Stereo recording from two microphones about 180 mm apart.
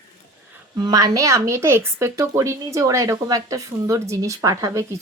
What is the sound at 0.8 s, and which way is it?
A woman's voice, 20° right (ahead or behind).